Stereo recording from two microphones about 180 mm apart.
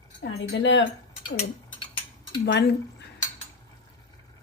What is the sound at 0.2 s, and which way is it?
Speech, 75° left (ahead or behind).